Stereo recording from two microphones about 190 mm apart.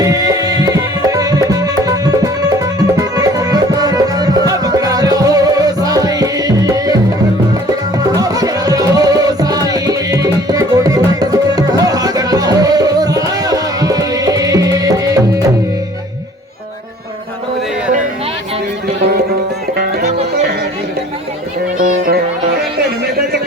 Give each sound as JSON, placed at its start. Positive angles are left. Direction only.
{"t": 0.0, "sound": "music", "side_deg": -20}
{"t": 7.9, "sound": "music", "side_deg": -20}
{"t": 21.8, "sound": "music", "side_deg": -50}